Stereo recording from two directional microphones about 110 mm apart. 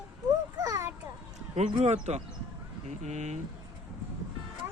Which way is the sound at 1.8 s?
85° right.